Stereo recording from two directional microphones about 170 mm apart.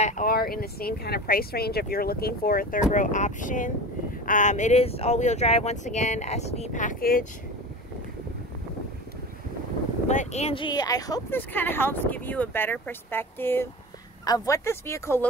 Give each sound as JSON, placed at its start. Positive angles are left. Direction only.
{"t": 0.0, "sound": "speech", "side_deg": 50}
{"t": 10.0, "sound": "speech", "side_deg": 40}
{"t": 11.3, "sound": "speech", "side_deg": 10}